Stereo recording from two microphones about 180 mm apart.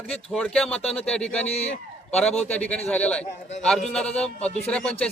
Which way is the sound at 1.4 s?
35° left (ahead or behind).